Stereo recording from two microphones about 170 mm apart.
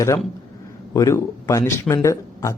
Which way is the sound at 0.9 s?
15° left (ahead or behind).